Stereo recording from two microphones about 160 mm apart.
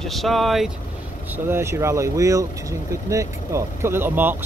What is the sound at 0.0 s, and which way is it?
Speech, centre (ahead or behind).